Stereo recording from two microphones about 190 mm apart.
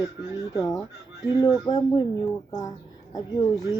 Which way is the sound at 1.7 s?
20° left (ahead or behind).